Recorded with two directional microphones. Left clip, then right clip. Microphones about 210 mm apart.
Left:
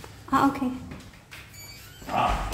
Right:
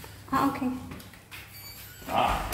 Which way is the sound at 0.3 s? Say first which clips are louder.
Left 4 dB; 10° left (ahead or behind).